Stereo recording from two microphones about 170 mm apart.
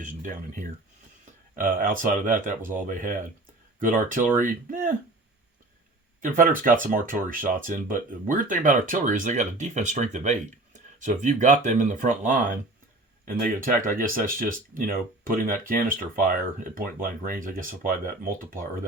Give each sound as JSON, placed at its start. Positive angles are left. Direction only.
{"t": 0.0, "sound": "speech", "side_deg": -50}
{"t": 6.2, "sound": "speech", "side_deg": -50}